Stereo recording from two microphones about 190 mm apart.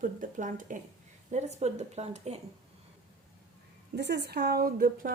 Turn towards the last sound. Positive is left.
turn(degrees=-50)  # may be behind; listen again after turning